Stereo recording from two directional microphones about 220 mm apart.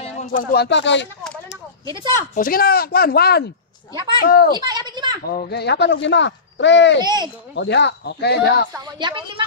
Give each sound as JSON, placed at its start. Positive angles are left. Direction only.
{"t": 0.0, "sound": "speech", "side_deg": 30}
{"t": 2.3, "sound": "speech", "side_deg": 40}
{"t": 4.5, "sound": "children playing", "side_deg": -20}
{"t": 5.2, "sound": "speech", "side_deg": 45}
{"t": 7.0, "sound": "a woman's voice", "side_deg": -20}
{"t": 7.5, "sound": "speech", "side_deg": 50}
{"t": 8.7, "sound": "a woman's voice", "side_deg": -20}